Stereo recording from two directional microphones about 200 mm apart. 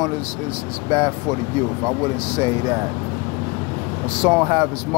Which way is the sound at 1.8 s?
20° right (ahead or behind).